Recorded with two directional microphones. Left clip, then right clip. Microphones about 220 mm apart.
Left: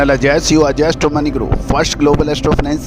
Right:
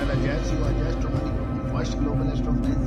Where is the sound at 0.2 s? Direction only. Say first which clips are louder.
Left 17 dB; 50° left (ahead or behind).